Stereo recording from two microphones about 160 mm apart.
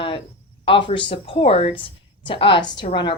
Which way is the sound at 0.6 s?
35° left (ahead or behind).